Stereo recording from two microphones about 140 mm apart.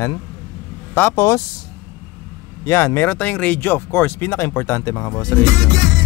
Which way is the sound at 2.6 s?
20° left (ahead or behind).